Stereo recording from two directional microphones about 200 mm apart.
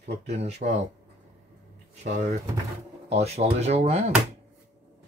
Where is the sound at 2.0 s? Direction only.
35° right (ahead or behind).